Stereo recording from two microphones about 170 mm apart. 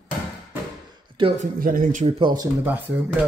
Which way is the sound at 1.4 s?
55° right (ahead or behind).